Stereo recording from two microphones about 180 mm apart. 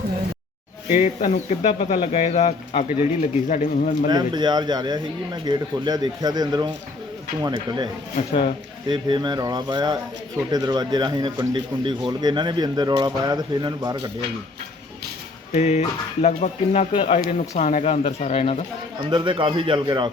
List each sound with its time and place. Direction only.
0.9 s speech: 45° left (ahead or behind)
4.1 s speech: 25° right (ahead or behind)
8.9 s speech: 25° right (ahead or behind)
15.5 s speech: 40° left (ahead or behind)
19.1 s speech: 25° right (ahead or behind)